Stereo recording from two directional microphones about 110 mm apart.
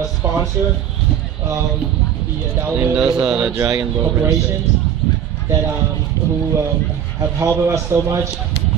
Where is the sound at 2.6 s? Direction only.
15° right (ahead or behind).